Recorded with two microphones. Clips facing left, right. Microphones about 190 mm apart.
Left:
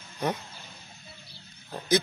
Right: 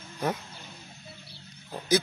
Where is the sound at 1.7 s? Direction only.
10° right (ahead or behind).